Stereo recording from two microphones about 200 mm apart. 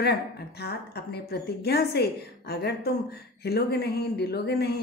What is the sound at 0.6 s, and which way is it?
A woman's voice, 55° left (ahead or behind).